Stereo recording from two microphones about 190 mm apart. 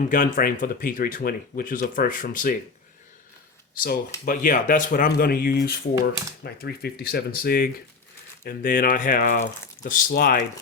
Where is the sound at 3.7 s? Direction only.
50° left (ahead or behind).